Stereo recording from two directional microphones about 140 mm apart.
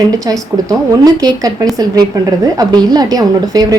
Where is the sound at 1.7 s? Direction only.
25° right (ahead or behind).